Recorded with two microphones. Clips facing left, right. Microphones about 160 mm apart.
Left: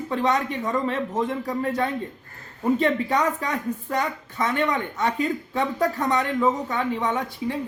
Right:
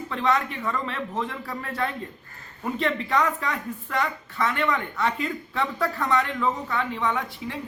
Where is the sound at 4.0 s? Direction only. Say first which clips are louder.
Right 4 dB; 20° left (ahead or behind).